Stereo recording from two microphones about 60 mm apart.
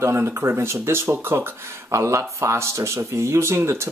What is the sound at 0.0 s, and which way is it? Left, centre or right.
Speech, right.